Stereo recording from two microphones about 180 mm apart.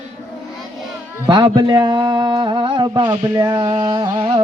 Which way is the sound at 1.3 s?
25° right (ahead or behind).